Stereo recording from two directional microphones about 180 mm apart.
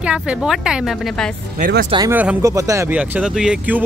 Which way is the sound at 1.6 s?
60° right (ahead or behind).